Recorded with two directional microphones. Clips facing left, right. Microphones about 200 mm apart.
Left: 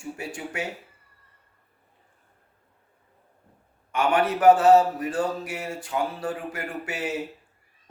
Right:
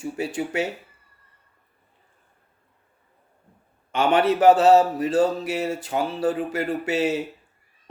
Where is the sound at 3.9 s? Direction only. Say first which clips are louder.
Right 3 dB; 25° right (ahead or behind).